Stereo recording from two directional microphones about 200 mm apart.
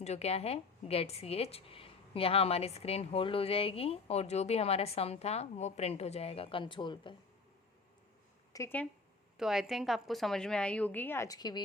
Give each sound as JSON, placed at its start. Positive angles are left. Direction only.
{"t": 0.0, "sound": "a woman's voice", "side_deg": 30}
{"t": 8.5, "sound": "speech", "side_deg": 10}
{"t": 9.4, "sound": "a woman's voice", "side_deg": 0}